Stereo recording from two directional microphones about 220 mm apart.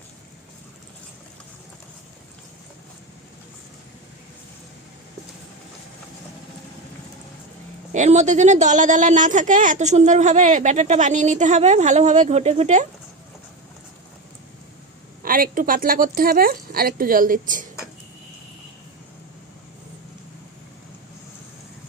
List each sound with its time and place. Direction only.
7.9 s a woman's voice: 30° right (ahead or behind)
15.2 s a woman's voice: 40° right (ahead or behind)